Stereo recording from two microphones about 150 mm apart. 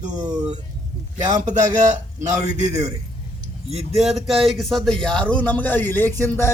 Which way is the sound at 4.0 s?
Centre (ahead or behind).